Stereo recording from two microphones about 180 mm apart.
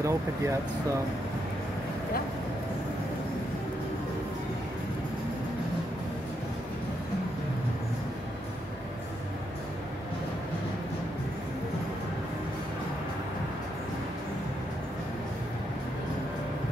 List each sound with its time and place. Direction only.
0.0 s speech: 15° right (ahead or behind)